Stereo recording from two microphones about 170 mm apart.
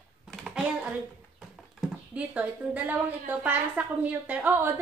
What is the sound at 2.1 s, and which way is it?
A woman's voice, 10° right (ahead or behind).